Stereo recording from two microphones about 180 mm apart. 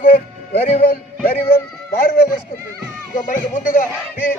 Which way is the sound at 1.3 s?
55° left (ahead or behind).